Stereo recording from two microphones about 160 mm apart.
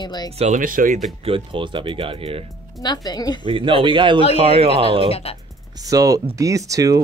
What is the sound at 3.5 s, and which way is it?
Speech, 35° right (ahead or behind).